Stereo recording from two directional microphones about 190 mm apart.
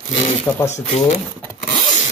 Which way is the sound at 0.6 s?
35° left (ahead or behind).